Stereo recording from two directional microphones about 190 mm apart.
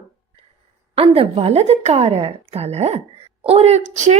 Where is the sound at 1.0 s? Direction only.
30° right (ahead or behind).